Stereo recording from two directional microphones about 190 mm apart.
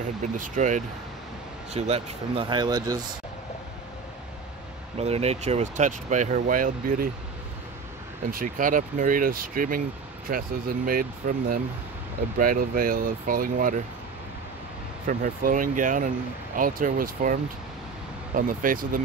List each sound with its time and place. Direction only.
0.2 s speech: 40° right (ahead or behind); by 3.1 s 20° right (ahead or behind)
4.9 s speech: 35° right (ahead or behind)
8.3 s speech: 45° right (ahead or behind)
15.0 s speech: 45° right (ahead or behind)